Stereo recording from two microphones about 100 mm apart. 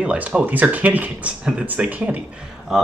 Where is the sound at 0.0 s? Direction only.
15° right (ahead or behind).